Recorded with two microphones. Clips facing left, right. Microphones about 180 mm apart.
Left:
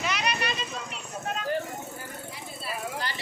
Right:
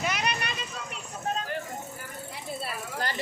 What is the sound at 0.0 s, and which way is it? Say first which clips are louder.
Vehicle: even; 50° right (ahead or behind).